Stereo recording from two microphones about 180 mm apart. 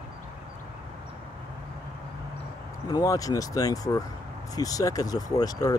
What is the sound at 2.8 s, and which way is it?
Speech, 20° left (ahead or behind).